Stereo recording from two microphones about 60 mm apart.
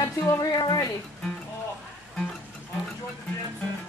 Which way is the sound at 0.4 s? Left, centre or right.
Left.